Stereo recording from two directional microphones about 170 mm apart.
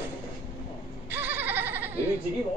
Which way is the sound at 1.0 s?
10° right (ahead or behind).